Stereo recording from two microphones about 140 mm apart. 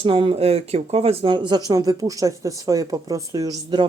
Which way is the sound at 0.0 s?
40° right (ahead or behind).